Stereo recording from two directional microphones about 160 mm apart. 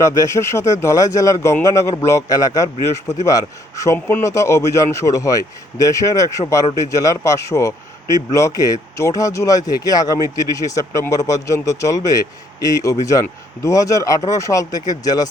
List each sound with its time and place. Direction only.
0.0 s a man's voice: 20° left (ahead or behind)